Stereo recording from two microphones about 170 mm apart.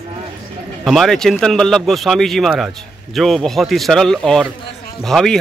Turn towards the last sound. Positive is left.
turn(degrees=0)  # may be behind; listen again after turning